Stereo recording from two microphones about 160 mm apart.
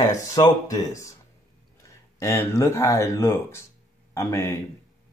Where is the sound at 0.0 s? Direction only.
20° left (ahead or behind).